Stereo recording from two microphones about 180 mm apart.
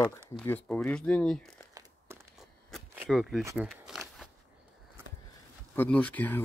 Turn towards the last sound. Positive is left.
turn(degrees=10)  # may be behind; listen again after turning